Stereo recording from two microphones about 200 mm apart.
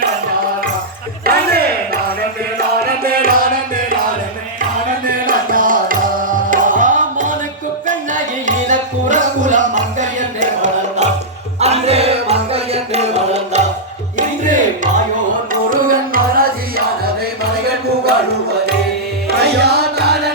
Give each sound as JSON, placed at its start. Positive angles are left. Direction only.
{"t": 1.2, "sound": "battle cry", "side_deg": -50}
{"t": 2.6, "sound": "music", "side_deg": -50}
{"t": 5.0, "sound": "music", "side_deg": -45}
{"t": 15.7, "sound": "tabla", "side_deg": -45}
{"t": 19.4, "sound": "music", "side_deg": -55}